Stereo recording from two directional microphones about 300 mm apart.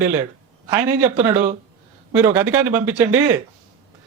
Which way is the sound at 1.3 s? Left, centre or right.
Right.